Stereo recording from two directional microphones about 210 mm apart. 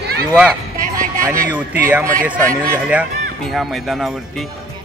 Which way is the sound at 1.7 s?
10° right (ahead or behind).